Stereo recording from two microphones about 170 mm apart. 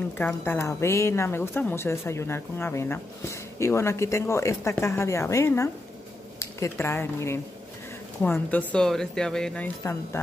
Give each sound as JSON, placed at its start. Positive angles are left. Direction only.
{"t": 0.2, "sound": "a woman's voice", "side_deg": 10}